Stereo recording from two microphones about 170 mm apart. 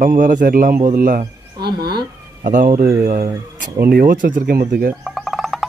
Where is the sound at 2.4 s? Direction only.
50° right (ahead or behind).